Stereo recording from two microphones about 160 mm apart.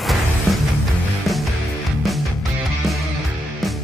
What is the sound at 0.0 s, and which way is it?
Music, centre (ahead or behind).